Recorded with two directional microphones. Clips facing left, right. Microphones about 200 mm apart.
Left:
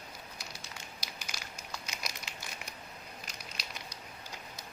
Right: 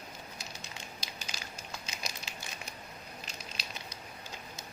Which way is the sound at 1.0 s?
25° right (ahead or behind).